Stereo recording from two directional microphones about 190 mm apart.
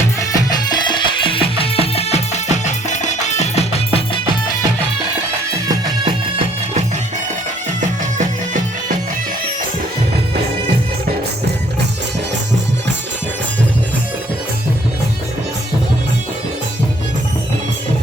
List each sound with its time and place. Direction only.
0.2 s music: 20° left (ahead or behind)